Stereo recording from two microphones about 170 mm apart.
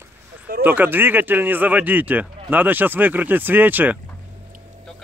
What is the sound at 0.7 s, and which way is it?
Speech, 10° right (ahead or behind).